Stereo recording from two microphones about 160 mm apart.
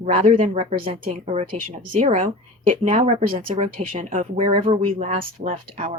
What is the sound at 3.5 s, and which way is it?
Speech, 55° right (ahead or behind).